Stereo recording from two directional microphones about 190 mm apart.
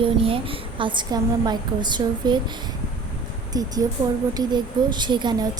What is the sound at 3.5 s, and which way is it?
A woman's voice, 20° right (ahead or behind).